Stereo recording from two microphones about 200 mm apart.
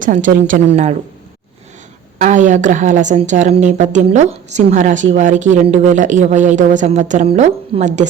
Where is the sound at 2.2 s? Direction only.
35° right (ahead or behind).